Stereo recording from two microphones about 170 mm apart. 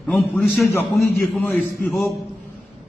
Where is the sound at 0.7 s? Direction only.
15° left (ahead or behind).